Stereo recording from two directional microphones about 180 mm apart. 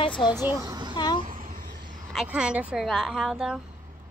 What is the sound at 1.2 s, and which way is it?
Babbling, 50° right (ahead or behind).